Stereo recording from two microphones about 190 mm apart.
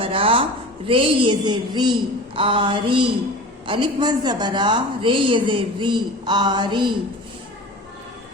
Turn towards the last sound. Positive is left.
turn(degrees=-25)  # may be behind; listen again after turning